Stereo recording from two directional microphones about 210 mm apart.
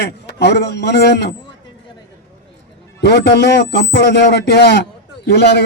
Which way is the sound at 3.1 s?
55° left (ahead or behind).